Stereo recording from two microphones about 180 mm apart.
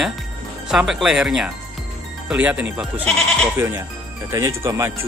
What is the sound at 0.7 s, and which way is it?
Speech, 5° right (ahead or behind).